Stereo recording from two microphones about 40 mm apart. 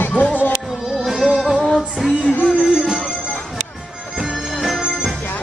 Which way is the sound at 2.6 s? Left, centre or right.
Centre.